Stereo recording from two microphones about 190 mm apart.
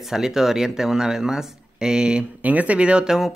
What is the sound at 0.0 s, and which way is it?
Speech, centre (ahead or behind).